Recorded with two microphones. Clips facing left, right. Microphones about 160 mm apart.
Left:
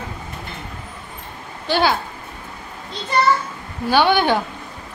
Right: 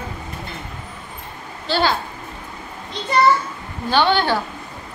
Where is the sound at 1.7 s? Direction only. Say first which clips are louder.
Left 1 dB; 10° left (ahead or behind).